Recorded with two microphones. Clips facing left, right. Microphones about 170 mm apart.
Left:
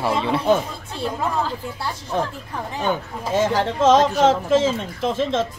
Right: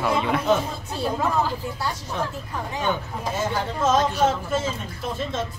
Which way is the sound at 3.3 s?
90° left.